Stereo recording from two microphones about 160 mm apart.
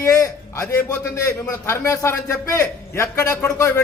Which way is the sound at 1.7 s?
20° left (ahead or behind).